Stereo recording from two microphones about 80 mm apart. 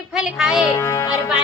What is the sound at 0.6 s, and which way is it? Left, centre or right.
Speech, left.